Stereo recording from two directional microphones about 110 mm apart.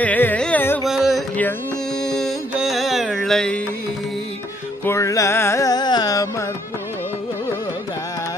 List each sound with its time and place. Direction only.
0.0 s carnatic music: 15° left (ahead or behind)
0.8 s music: centre (ahead or behind)
2.5 s carnatic music: 5° right (ahead or behind)
4.8 s music: 30° left (ahead or behind)